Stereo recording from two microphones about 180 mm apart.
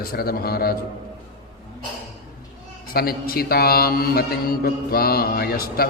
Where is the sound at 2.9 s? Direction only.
55° left (ahead or behind).